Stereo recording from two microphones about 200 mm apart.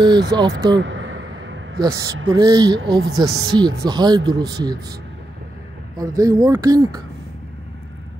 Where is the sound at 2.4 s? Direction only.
20° right (ahead or behind).